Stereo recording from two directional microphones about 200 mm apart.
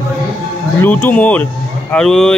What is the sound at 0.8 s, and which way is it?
Speech, 10° left (ahead or behind).